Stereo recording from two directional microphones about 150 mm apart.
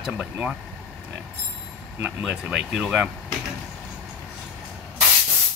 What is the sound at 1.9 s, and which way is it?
Speech, 15° right (ahead or behind).